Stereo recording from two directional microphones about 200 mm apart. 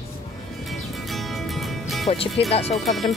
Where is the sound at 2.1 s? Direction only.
30° left (ahead or behind).